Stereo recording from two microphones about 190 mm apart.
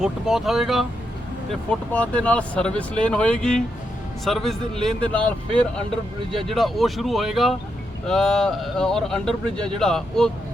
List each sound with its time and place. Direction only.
0.0 s speech: centre (ahead or behind)